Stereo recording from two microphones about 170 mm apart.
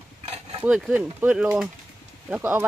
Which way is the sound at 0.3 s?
35° right (ahead or behind).